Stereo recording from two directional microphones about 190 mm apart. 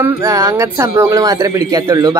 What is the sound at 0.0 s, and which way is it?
Speech, 10° right (ahead or behind).